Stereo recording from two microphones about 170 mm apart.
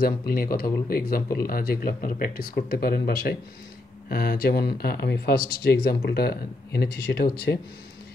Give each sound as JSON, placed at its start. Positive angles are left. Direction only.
{"t": 0.3, "sound": "speech", "side_deg": 60}